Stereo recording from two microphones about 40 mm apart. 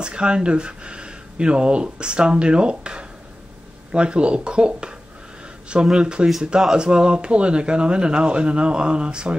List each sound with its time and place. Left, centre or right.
0.0 s speech: right